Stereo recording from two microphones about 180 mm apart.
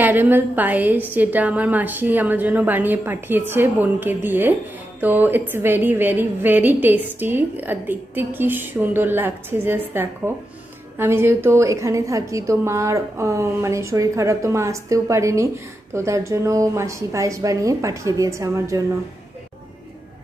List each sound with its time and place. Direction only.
0.0 s a woman's voice: 10° right (ahead or behind)